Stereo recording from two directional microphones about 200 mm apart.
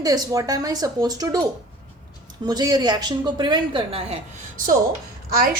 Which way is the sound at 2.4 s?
20° right (ahead or behind).